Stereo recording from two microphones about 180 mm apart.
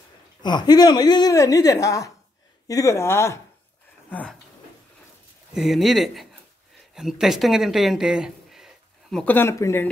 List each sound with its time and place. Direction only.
0.4 s a woman's voice: 25° left (ahead or behind); by 4.4 s 5° left (ahead or behind)
5.5 s speech: centre (ahead or behind)
9.2 s speech: 10° left (ahead or behind)